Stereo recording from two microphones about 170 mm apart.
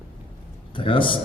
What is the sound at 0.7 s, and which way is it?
Speech, 30° left (ahead or behind).